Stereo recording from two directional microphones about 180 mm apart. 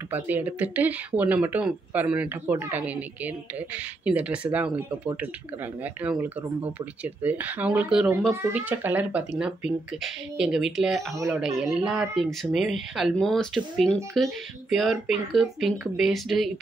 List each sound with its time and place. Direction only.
0.1 s speech: 10° right (ahead or behind)
11.1 s speech: 15° right (ahead or behind)
11.6 s speech: centre (ahead or behind)